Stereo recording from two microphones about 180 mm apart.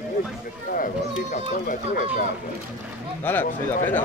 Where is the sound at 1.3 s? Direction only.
45° left (ahead or behind).